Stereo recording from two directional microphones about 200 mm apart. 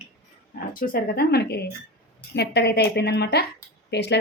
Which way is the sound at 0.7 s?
45° left (ahead or behind).